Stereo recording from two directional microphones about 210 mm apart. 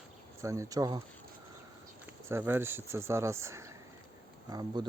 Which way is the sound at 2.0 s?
10° right (ahead or behind).